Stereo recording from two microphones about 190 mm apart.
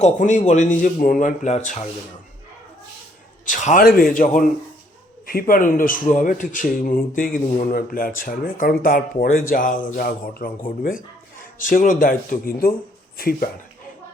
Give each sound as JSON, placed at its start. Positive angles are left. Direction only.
{"t": 0.0, "sound": "speech", "side_deg": 40}
{"t": 3.5, "sound": "speech", "side_deg": 40}